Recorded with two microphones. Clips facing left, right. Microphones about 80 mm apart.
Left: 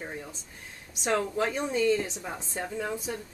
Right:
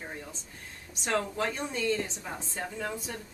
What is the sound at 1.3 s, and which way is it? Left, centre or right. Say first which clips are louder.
Speech: left 4 dB; centre.